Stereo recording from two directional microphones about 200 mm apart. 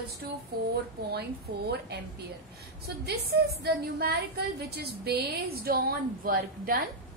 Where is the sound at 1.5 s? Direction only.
45° right (ahead or behind).